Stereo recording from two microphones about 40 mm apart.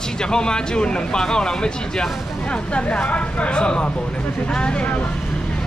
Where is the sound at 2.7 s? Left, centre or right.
Left.